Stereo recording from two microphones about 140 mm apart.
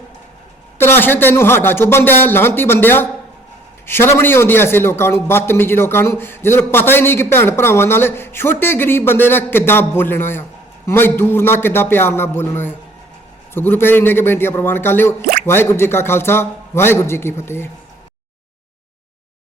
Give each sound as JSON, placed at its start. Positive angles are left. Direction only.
{"t": 0.8, "sound": "a man's voice", "side_deg": 15}